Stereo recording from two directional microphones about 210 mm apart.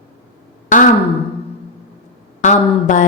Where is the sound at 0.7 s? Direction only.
40° left (ahead or behind).